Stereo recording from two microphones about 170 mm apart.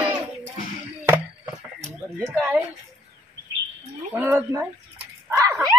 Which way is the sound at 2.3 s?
10° right (ahead or behind).